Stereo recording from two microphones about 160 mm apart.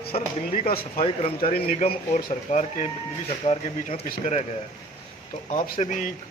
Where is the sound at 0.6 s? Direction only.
65° left (ahead or behind).